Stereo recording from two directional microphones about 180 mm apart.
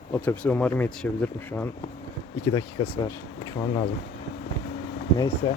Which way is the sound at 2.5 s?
25° left (ahead or behind).